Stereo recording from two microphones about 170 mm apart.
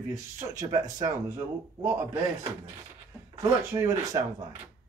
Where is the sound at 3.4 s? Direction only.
20° right (ahead or behind).